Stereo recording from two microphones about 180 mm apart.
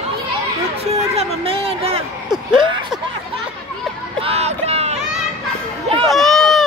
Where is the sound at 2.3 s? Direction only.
5° right (ahead or behind).